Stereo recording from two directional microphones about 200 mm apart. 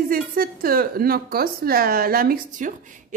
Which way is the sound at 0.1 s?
45° right (ahead or behind).